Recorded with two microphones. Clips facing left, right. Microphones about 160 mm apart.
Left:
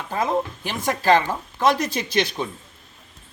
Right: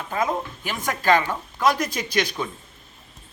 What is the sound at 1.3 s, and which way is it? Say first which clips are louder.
A man's voice: left 2 dB; 30° left (ahead or behind).